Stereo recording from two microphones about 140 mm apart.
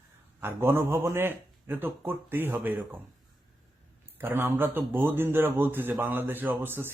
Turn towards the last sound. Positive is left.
turn(degrees=-15)  # may be behind; listen again after turning